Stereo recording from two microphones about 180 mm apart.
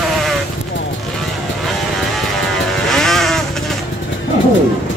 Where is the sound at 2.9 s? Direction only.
Centre (ahead or behind).